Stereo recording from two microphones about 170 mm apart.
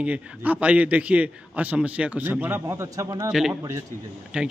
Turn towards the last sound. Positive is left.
turn(degrees=-5)  # may be behind; listen again after turning